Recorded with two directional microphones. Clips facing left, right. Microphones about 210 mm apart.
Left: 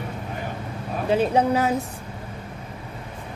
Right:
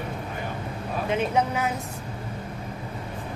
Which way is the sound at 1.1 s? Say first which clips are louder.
Left 6 dB; 35° left (ahead or behind).